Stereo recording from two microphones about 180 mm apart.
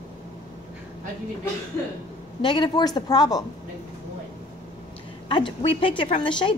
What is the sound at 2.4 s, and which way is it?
A woman's voice, 25° left (ahead or behind).